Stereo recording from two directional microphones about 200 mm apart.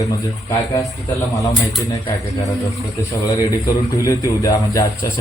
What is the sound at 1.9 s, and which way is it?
A man's voice, 15° left (ahead or behind).